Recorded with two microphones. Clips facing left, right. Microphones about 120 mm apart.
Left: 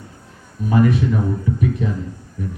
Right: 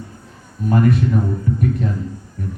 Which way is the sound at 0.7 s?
50° right (ahead or behind).